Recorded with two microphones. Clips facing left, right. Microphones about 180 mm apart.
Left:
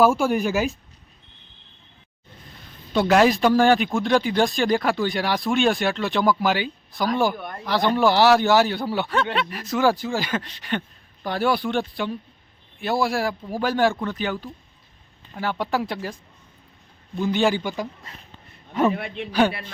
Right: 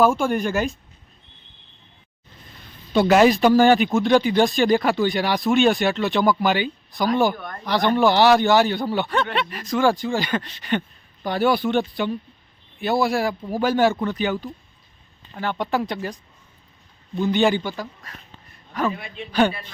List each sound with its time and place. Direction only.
0.0 s speech: 5° left (ahead or behind)
2.9 s speech: centre (ahead or behind)
17.2 s speech: centre (ahead or behind)
17.6 s a man's voice: 15° left (ahead or behind)
18.9 s a man's voice: 70° left (ahead or behind)
19.3 s speech: 5° left (ahead or behind)